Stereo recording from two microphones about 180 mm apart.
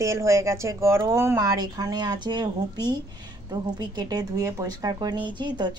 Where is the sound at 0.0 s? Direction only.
15° right (ahead or behind).